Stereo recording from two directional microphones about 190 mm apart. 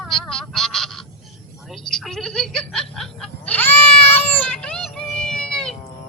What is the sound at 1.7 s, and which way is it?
Snicker, centre (ahead or behind).